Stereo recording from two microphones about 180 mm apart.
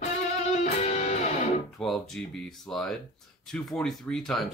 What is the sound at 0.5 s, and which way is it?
Music, 35° left (ahead or behind).